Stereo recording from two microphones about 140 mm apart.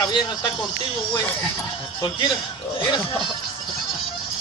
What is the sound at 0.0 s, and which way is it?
Speech, 30° left (ahead or behind).